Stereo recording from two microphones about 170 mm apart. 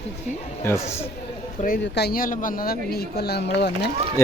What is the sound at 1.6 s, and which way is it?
Speech, 70° left (ahead or behind).